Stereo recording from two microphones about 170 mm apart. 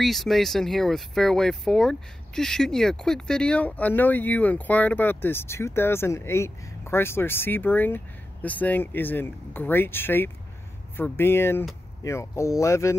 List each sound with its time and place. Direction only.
0.0 s speech: centre (ahead or behind); by 12.9 s 15° left (ahead or behind)